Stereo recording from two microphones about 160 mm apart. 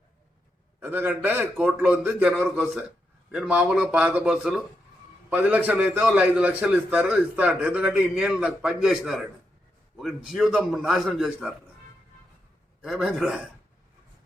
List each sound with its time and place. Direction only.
0.8 s a man's voice: 15° right (ahead or behind)
12.8 s a man's voice: 5° right (ahead or behind)